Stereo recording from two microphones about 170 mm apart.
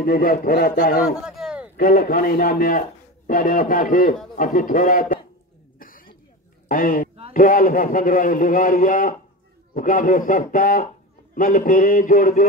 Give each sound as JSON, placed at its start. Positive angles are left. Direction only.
{"t": 0.0, "sound": "a man's voice", "side_deg": 60}
{"t": 1.2, "sound": "a sound", "side_deg": -5}
{"t": 1.8, "sound": "a man's voice", "side_deg": 60}
{"t": 5.8, "sound": "cough", "side_deg": 55}
{"t": 6.7, "sound": "a man's voice", "side_deg": 55}